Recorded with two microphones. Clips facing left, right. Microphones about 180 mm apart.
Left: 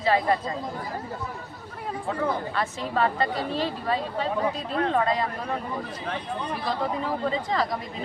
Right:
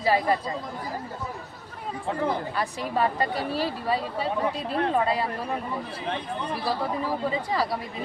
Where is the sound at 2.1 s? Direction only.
15° right (ahead or behind).